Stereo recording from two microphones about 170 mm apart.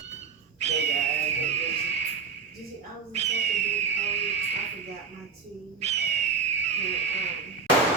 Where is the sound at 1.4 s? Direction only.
40° right (ahead or behind).